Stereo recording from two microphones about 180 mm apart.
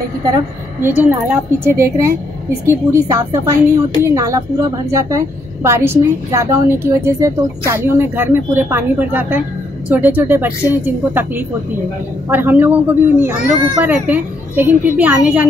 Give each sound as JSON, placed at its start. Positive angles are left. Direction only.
{"t": 0.8, "sound": "a woman's voice", "side_deg": -10}